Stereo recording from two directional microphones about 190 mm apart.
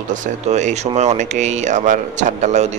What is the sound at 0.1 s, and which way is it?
Speech, 40° right (ahead or behind).